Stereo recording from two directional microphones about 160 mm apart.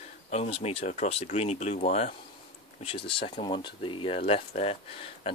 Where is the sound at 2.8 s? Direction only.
35° left (ahead or behind).